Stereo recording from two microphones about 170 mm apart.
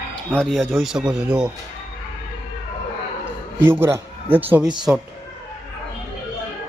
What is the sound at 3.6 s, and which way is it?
A man's voice, 15° right (ahead or behind).